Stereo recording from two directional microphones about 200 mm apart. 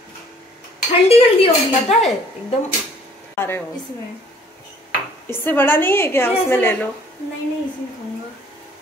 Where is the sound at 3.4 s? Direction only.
10° left (ahead or behind).